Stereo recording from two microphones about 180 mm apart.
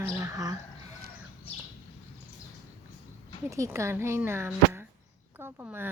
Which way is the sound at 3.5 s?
15° right (ahead or behind).